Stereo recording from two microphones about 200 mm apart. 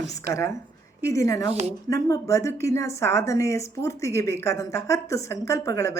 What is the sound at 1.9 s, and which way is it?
A woman's voice, 15° left (ahead or behind).